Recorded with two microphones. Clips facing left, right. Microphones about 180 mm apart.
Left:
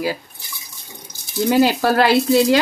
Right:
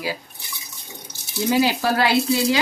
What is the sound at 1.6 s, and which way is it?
Speech, 60° left (ahead or behind).